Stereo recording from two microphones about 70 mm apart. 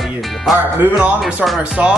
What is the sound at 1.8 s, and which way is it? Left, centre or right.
Speech, centre.